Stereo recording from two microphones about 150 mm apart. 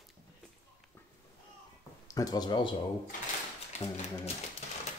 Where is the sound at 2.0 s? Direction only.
25° left (ahead or behind).